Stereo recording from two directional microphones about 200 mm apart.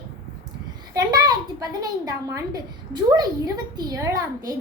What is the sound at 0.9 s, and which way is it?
A woman's voice, 20° right (ahead or behind).